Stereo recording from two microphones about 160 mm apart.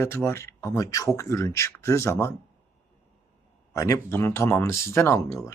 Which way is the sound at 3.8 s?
20° left (ahead or behind).